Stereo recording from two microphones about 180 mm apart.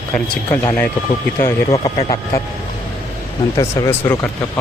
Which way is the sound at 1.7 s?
35° left (ahead or behind).